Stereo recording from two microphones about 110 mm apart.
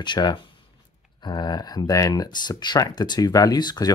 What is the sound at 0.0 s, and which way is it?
Speech, 45° left (ahead or behind).